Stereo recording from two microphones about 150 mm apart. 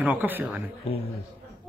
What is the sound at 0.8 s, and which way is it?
Speech, 40° left (ahead or behind).